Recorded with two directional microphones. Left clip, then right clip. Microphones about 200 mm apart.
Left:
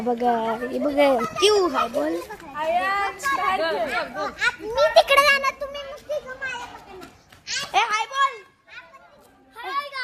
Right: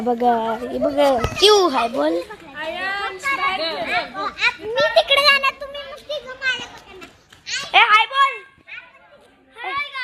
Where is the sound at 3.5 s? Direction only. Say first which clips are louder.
Left 1 dB; 60° left (ahead or behind).